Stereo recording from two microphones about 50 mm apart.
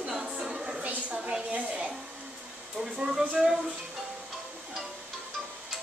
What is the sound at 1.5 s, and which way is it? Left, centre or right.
Hair dryer, right.